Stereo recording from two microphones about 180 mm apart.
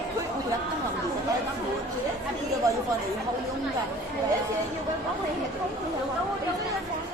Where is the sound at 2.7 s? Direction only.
20° right (ahead or behind).